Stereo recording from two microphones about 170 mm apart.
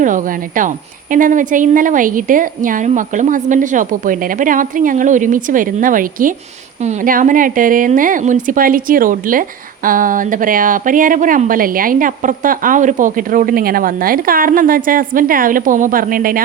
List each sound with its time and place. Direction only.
0.0 s speech: 50° right (ahead or behind)